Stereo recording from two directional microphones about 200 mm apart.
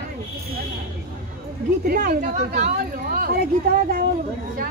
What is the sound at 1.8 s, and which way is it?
Speech, 50° right (ahead or behind).